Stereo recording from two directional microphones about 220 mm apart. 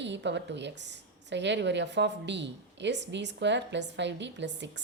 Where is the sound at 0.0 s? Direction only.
55° right (ahead or behind).